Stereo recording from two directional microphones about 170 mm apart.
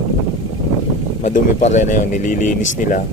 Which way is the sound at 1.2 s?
45° left (ahead or behind).